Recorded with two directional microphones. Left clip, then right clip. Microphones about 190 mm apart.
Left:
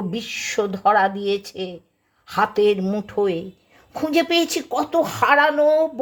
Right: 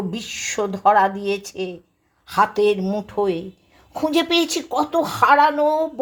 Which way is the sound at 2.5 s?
20° left (ahead or behind).